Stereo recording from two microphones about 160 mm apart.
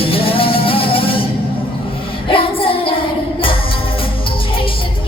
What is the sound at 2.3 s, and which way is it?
Child singing, 35° left (ahead or behind).